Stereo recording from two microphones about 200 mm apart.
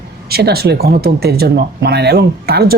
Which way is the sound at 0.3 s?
50° right (ahead or behind).